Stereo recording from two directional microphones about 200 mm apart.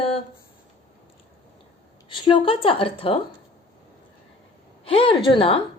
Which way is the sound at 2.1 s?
25° left (ahead or behind).